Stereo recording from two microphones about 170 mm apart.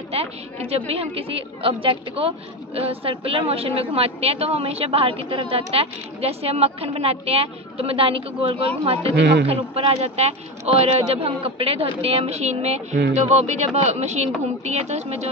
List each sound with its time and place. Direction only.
0.1 s a sound: 35° right (ahead or behind)
0.8 s a woman's voice: 35° right (ahead or behind)
9.1 s speech: 80° right
9.5 s a woman's voice: 35° right (ahead or behind)